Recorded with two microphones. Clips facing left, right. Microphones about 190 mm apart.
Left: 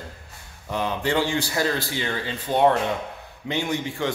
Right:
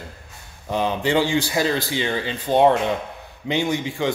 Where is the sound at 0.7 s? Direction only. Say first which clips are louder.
Right 3 dB; 20° right (ahead or behind).